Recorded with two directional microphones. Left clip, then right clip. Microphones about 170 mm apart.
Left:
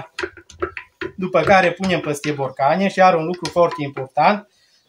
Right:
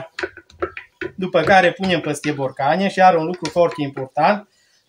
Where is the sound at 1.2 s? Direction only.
Centre (ahead or behind).